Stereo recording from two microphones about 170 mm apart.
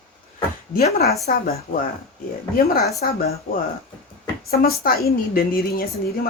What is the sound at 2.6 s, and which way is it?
Speech, 65° left (ahead or behind).